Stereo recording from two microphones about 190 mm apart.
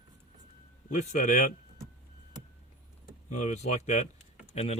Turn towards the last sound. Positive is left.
turn(degrees=35)  # may be behind; listen again after turning